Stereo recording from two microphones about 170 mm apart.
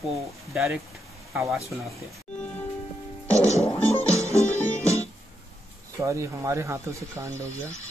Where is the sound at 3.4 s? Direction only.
40° left (ahead or behind).